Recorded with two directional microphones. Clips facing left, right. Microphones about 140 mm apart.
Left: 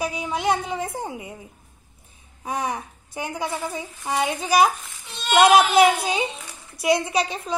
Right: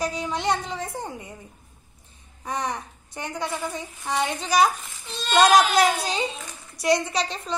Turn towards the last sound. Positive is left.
turn(degrees=10)  # may be behind; listen again after turning